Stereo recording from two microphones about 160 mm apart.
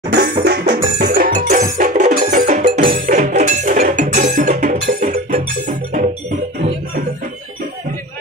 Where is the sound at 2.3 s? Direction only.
60° right (ahead or behind).